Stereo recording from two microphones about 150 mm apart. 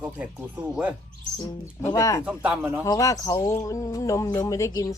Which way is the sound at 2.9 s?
25° left (ahead or behind).